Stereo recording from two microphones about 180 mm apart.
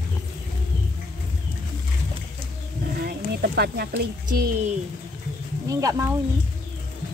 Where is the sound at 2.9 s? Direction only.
60° right (ahead or behind).